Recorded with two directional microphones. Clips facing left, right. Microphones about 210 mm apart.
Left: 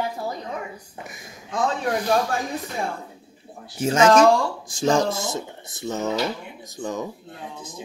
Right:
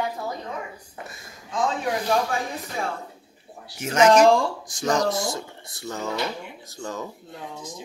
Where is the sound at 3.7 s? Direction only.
30° left (ahead or behind).